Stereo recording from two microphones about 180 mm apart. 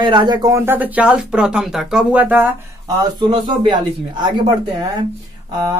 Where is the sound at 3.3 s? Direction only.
25° right (ahead or behind).